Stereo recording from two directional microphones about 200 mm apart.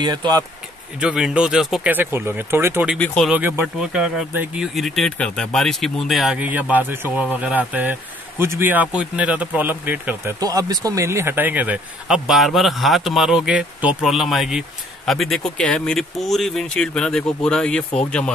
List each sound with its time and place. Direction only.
0.0 s speech: 20° right (ahead or behind)
1.0 s speech: 5° right (ahead or behind)
3.0 s speech: 5° left (ahead or behind)
3.3 s speech: 10° right (ahead or behind)